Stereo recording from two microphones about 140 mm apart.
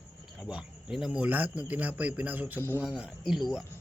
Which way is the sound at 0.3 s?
5° right (ahead or behind).